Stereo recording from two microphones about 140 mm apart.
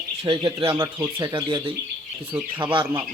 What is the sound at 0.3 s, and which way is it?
Speech, 40° right (ahead or behind).